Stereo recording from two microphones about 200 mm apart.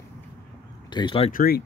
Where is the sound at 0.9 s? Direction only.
25° left (ahead or behind).